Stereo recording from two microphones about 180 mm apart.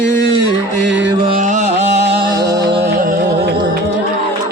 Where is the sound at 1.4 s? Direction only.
40° right (ahead or behind).